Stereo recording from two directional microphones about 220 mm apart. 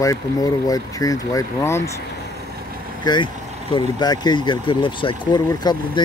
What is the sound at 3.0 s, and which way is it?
Speech, 20° left (ahead or behind).